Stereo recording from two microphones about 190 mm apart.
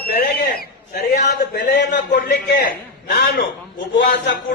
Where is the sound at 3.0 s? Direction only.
55° left (ahead or behind).